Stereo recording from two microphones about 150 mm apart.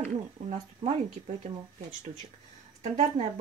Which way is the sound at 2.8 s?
50° right (ahead or behind).